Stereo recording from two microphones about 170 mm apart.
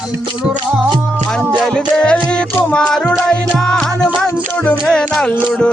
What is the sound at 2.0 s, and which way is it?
Music, 5° left (ahead or behind).